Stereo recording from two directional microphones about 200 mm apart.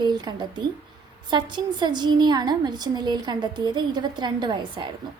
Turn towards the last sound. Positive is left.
turn(degrees=-20)  # may be behind; listen again after turning